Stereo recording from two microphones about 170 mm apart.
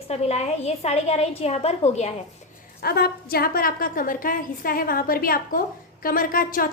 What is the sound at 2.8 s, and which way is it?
A woman's voice, 65° left (ahead or behind).